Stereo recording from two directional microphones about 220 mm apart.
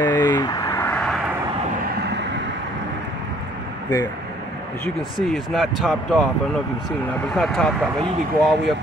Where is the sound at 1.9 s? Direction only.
50° right (ahead or behind).